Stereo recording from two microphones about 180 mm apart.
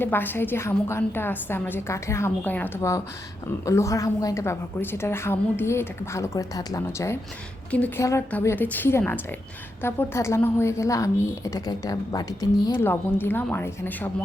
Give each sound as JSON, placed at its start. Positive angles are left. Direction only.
{"t": 0.0, "sound": "a woman's voice", "side_deg": 10}